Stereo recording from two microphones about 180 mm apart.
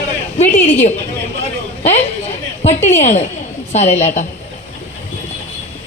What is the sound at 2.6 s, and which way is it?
Speech, 40° left (ahead or behind).